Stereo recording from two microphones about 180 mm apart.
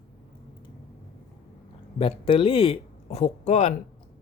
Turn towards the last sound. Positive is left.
turn(degrees=40)  # may be behind; listen again after turning